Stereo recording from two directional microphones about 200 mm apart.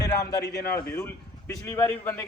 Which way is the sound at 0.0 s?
15° left (ahead or behind).